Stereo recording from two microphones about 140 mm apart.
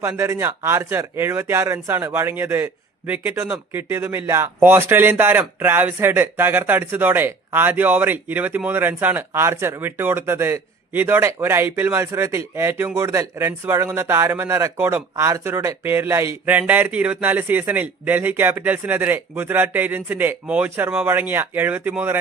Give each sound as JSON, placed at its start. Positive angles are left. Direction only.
{"t": 0.0, "sound": "speech", "side_deg": -20}